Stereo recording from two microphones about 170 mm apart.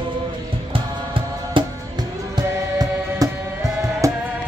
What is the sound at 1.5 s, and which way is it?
Music, 30° right (ahead or behind).